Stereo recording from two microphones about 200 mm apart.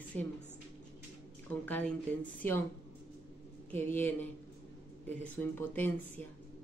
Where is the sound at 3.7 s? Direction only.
10° left (ahead or behind).